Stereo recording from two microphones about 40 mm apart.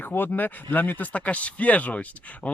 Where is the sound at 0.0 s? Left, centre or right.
Left.